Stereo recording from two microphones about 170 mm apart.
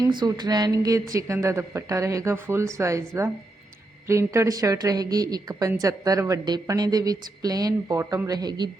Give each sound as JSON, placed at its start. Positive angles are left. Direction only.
{"t": 0.0, "sound": "a woman's voice", "side_deg": -25}